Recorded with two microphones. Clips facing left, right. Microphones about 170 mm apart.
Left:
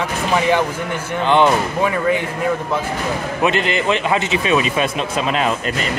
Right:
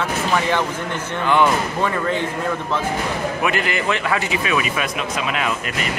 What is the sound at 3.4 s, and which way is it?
Speech, 25° left (ahead or behind).